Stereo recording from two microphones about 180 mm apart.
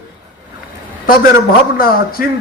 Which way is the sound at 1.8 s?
55° left (ahead or behind).